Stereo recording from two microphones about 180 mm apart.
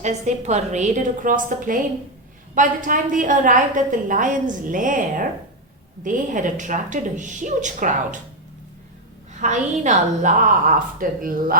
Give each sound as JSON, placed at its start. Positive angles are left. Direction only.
{"t": 0.0, "sound": "a woman's voice", "side_deg": -40}
{"t": 9.4, "sound": "a woman's voice", "side_deg": -40}